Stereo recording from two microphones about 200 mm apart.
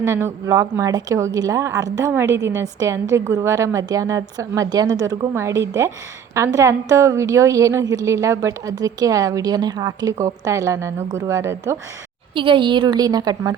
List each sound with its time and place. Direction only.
0.0 s a woman's voice: 10° right (ahead or behind)
12.3 s a woman's voice: 25° right (ahead or behind)